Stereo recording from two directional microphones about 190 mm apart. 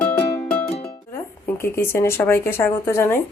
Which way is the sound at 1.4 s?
10° left (ahead or behind).